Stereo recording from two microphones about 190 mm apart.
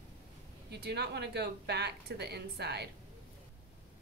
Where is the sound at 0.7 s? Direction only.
60° right (ahead or behind).